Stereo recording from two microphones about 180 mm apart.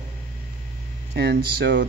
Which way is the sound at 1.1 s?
65° right (ahead or behind).